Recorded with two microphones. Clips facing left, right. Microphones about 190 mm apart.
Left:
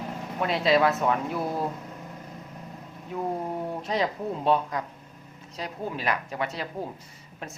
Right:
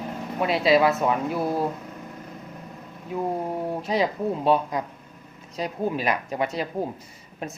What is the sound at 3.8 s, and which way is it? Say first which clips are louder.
Speech: right 4 dB; 5° right (ahead or behind).